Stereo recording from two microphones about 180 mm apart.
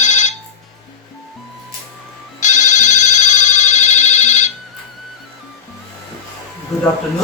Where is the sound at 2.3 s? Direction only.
40° left (ahead or behind).